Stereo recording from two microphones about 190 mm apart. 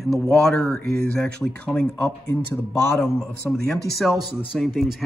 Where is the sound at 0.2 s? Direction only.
5° left (ahead or behind).